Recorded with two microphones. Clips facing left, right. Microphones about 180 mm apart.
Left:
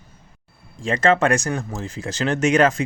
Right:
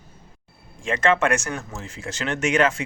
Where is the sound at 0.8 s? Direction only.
35° left (ahead or behind).